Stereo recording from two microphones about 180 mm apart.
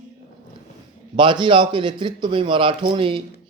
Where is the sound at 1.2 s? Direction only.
25° right (ahead or behind).